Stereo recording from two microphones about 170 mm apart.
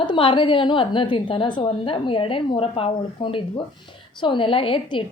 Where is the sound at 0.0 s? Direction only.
30° left (ahead or behind).